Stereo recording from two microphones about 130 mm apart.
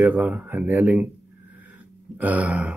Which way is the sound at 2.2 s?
10° right (ahead or behind).